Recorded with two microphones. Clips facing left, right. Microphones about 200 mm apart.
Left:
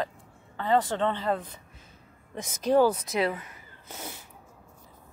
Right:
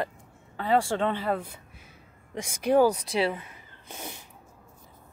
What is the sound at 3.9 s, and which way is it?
Cat, 20° right (ahead or behind).